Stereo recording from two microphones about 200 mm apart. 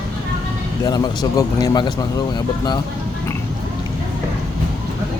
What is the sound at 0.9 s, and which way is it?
Speech, 20° left (ahead or behind).